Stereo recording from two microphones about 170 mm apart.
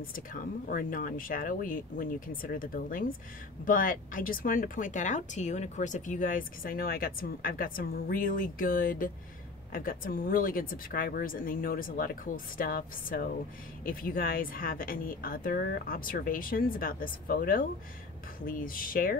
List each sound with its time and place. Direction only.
0.0 s speech: 55° left (ahead or behind)